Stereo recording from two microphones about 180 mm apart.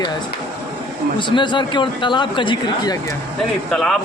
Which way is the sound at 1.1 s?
25° left (ahead or behind).